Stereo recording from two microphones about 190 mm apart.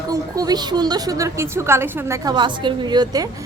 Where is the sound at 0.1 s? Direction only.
20° right (ahead or behind).